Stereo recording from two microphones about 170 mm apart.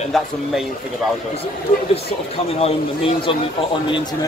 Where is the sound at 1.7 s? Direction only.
30° left (ahead or behind).